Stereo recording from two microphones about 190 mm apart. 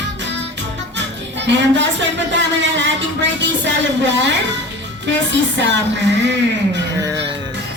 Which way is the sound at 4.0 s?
70° right (ahead or behind).